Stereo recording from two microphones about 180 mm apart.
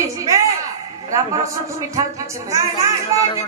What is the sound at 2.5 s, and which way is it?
Speech, 15° right (ahead or behind).